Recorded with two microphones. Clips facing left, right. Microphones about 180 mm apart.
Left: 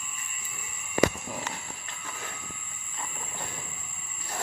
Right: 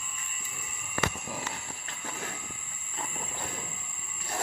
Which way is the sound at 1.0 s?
20° left (ahead or behind).